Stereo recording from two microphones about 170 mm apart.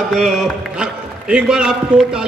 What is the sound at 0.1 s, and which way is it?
Speech, centre (ahead or behind).